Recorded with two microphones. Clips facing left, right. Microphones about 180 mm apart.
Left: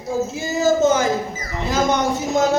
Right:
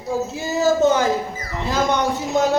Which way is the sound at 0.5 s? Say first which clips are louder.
Even; 45° left (ahead or behind).